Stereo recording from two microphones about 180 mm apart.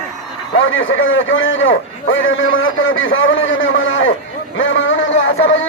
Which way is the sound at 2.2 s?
90° left.